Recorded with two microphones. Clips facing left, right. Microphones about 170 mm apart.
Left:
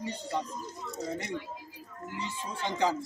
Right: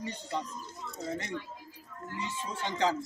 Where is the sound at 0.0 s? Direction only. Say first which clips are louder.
Left 2 dB; 10° left (ahead or behind).